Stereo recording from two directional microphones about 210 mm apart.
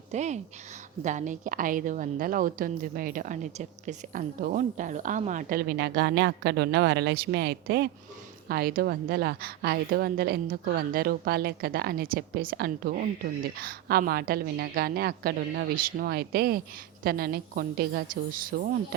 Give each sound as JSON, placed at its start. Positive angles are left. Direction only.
{"t": 0.1, "sound": "a woman's voice", "side_deg": -35}